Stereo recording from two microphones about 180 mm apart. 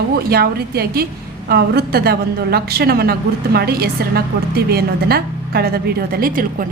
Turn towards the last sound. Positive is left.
turn(degrees=-50)  # may be behind; listen again after turning